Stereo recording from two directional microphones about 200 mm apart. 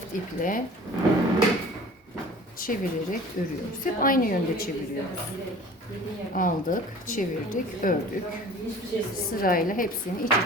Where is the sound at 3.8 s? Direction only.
45° left (ahead or behind).